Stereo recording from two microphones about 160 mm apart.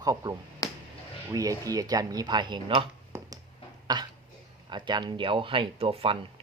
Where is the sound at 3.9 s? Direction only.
25° right (ahead or behind).